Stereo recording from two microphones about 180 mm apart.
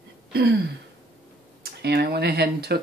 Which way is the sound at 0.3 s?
60° right (ahead or behind).